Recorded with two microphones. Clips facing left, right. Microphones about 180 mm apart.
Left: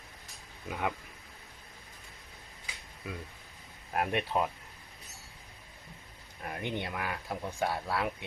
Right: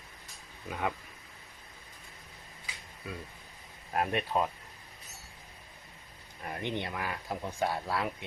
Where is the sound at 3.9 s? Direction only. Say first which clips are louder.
Even; 10° left (ahead or behind).